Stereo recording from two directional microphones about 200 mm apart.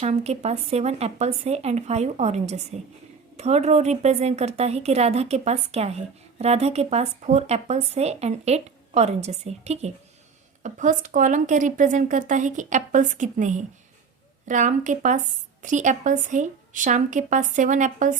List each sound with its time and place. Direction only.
0.0 s speech: 35° right (ahead or behind)